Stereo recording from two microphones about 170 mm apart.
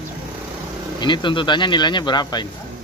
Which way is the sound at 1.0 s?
25° left (ahead or behind).